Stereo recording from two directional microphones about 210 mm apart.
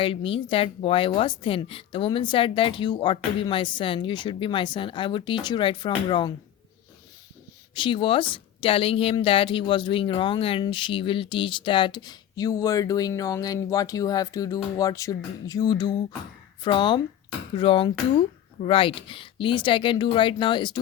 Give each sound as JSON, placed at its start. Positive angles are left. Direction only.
{"t": 0.0, "sound": "a woman's voice", "side_deg": 25}
{"t": 7.8, "sound": "a woman's voice", "side_deg": 25}